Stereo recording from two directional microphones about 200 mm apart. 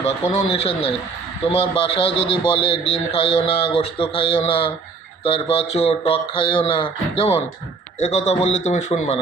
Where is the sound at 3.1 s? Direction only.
30° left (ahead or behind).